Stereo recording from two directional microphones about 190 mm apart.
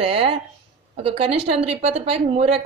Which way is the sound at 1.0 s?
30° right (ahead or behind).